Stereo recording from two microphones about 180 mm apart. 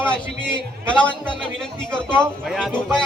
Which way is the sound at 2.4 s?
Centre (ahead or behind).